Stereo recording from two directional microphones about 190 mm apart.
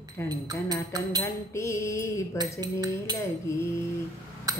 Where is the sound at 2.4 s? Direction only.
20° right (ahead or behind).